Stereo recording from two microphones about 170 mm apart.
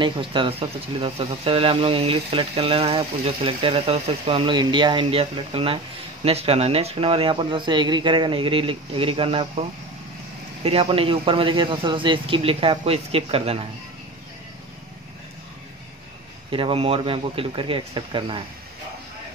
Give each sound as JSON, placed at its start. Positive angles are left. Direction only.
{"t": 0.0, "sound": "speech", "side_deg": -30}
{"t": 16.4, "sound": "speech", "side_deg": -30}